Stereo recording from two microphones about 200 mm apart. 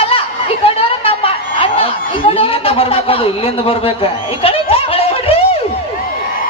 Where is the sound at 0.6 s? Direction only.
30° left (ahead or behind).